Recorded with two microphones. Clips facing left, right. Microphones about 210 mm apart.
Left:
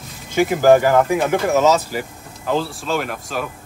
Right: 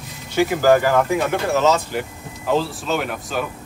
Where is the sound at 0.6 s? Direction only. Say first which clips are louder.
Left 4 dB; 15° left (ahead or behind).